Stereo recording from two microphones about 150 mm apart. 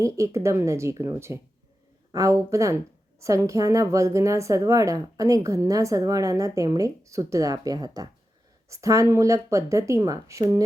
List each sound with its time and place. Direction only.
0.0 s a woman's voice: 20° right (ahead or behind)